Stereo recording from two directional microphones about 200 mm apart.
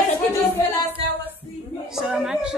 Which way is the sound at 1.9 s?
Centre (ahead or behind).